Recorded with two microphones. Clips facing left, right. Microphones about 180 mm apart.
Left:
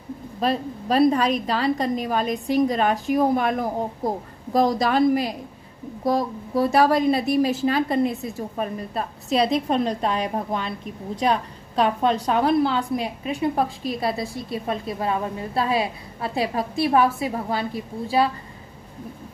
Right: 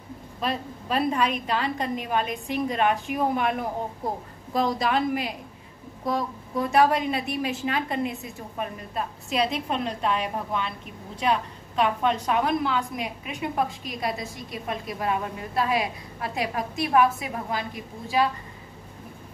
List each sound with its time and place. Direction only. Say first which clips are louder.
0.4 s a woman's voice: left 6 dB; 35° left (ahead or behind)